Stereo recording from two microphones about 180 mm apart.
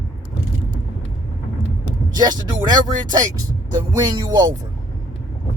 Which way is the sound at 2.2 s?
20° right (ahead or behind).